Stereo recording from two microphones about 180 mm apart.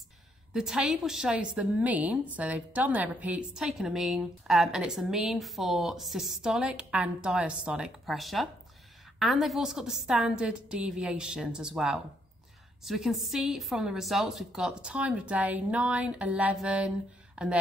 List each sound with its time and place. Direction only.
0.5 s a woman's voice: 5° right (ahead or behind)